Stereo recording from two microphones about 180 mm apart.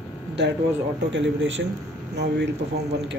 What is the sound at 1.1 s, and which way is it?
Speech, 90° right.